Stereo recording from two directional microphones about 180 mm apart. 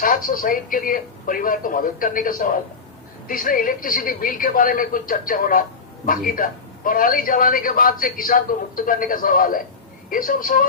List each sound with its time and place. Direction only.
0.0 s a man's voice: 50° left (ahead or behind)